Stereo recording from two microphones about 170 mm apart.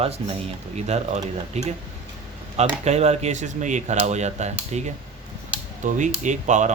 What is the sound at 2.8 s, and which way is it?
Speech, 40° right (ahead or behind).